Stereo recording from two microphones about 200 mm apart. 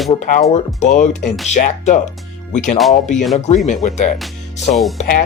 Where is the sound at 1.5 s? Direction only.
40° left (ahead or behind).